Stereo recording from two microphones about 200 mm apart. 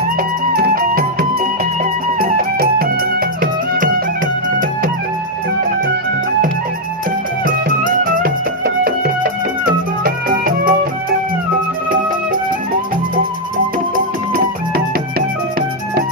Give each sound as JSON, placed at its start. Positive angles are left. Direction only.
{"t": 0.5, "sound": "music", "side_deg": -50}
{"t": 7.4, "sound": "music", "side_deg": -45}